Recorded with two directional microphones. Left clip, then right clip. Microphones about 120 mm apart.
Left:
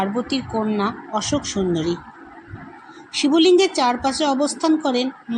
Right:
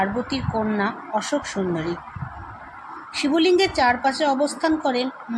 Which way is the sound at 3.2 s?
15° left (ahead or behind).